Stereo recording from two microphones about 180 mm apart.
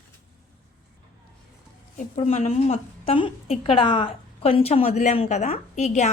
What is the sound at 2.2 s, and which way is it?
A woman's voice, 35° left (ahead or behind).